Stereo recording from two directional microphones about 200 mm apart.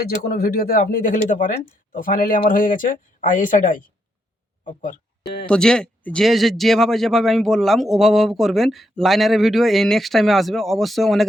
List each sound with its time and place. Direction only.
0.3 s speech: 50° left (ahead or behind)
5.2 s speech: 55° left (ahead or behind)
5.5 s speech: 5° left (ahead or behind)